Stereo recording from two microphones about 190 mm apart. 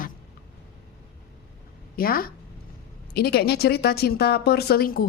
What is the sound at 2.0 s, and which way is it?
A woman's voice, 50° left (ahead or behind).